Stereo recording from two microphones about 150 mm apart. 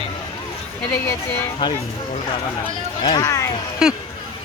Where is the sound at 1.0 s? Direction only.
15° left (ahead or behind).